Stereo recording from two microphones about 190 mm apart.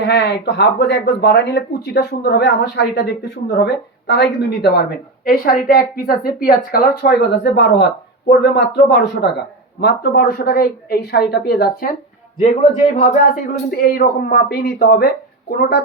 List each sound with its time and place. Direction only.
0.0 s speech: 65° left (ahead or behind)
13.0 s speech: 40° left (ahead or behind)
13.7 s speech: 55° left (ahead or behind)